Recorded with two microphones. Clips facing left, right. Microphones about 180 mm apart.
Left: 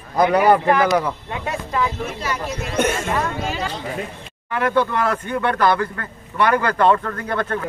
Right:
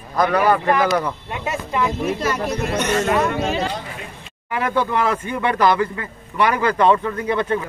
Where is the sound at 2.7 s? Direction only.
50° left (ahead or behind).